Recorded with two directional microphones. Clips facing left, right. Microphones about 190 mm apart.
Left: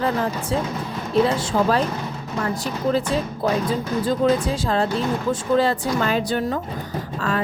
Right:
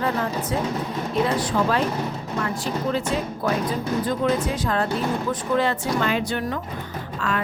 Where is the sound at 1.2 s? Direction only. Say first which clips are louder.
Right 1 dB; 35° left (ahead or behind).